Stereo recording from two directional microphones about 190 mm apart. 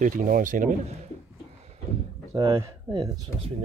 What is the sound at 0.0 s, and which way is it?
Speech, 45° right (ahead or behind).